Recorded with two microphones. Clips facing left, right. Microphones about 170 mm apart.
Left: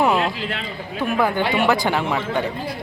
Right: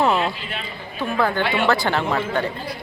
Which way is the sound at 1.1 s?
15° left (ahead or behind).